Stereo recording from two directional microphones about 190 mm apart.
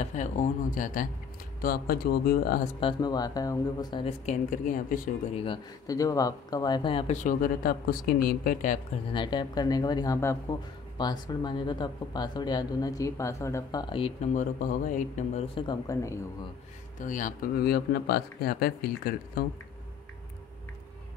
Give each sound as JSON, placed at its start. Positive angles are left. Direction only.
{"t": 0.0, "sound": "speech", "side_deg": 40}
{"t": 2.8, "sound": "speech", "side_deg": 25}
{"t": 4.3, "sound": "speech", "side_deg": 45}
{"t": 5.4, "sound": "speech", "side_deg": 20}
{"t": 7.2, "sound": "speech", "side_deg": 50}
{"t": 9.1, "sound": "speech", "side_deg": 25}
{"t": 17.0, "sound": "speech", "side_deg": 45}